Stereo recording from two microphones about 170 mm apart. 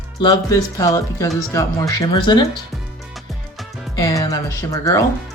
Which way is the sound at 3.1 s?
Centre (ahead or behind).